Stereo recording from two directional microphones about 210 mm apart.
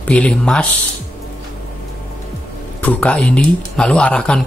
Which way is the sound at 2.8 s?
5° left (ahead or behind).